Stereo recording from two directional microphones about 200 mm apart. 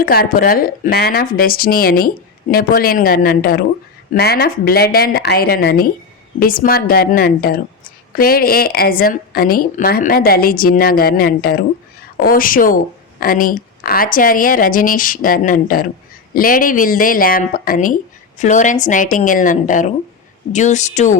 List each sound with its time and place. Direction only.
0.0 s speech: 45° left (ahead or behind)